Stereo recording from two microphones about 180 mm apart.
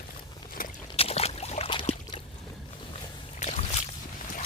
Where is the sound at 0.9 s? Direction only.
35° left (ahead or behind).